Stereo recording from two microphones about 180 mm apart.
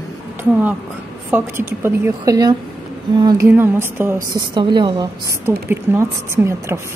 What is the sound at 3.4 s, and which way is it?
Speech, 10° right (ahead or behind).